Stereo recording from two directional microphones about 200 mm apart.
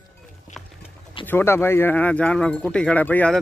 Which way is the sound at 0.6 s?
Centre (ahead or behind).